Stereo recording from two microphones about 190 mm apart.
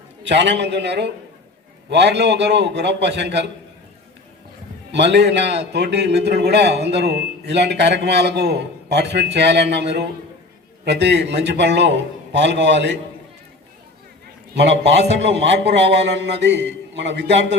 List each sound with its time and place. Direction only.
0.3 s a man's voice: 65° right (ahead or behind)
4.9 s a man's voice: 65° right (ahead or behind)
14.5 s a man's voice: 65° right (ahead or behind)